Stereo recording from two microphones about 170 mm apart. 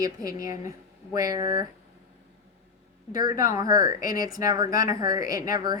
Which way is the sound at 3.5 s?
20° right (ahead or behind).